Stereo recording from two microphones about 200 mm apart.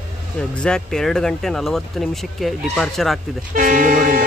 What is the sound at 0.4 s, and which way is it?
Speech, 5° left (ahead or behind).